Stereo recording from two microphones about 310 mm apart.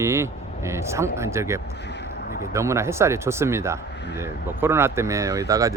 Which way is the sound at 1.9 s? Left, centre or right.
Left.